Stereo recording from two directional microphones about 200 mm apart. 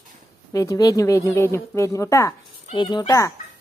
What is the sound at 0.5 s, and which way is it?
Speech, 15° left (ahead or behind).